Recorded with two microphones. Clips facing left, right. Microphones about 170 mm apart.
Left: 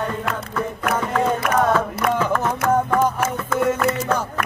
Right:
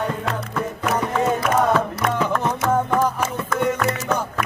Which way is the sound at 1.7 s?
Centre (ahead or behind).